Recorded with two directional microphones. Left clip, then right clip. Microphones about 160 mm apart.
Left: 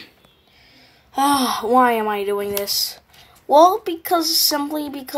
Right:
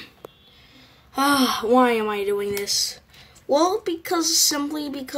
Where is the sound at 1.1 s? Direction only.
5° right (ahead or behind).